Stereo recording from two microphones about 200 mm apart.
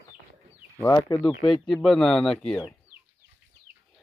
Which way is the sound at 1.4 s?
Centre (ahead or behind).